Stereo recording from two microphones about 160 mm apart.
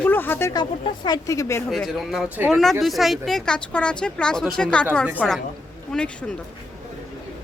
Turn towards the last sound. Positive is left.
turn(degrees=5)  # may be behind; listen again after turning